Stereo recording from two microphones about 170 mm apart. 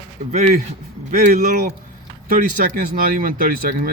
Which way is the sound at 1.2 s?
50° right (ahead or behind).